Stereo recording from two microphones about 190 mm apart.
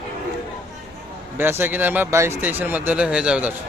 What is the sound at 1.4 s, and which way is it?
Speech, 10° right (ahead or behind).